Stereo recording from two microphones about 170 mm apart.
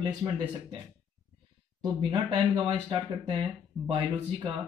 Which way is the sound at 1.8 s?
25° right (ahead or behind).